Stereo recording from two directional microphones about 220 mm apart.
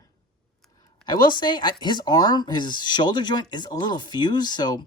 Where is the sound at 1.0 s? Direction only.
20° left (ahead or behind).